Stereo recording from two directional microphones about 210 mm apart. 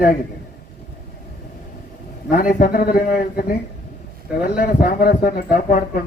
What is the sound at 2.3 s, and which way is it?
Speech, 40° left (ahead or behind).